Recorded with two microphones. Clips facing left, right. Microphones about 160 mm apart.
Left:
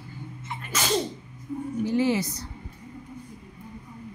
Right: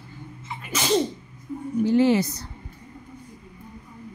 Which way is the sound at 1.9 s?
65° right (ahead or behind).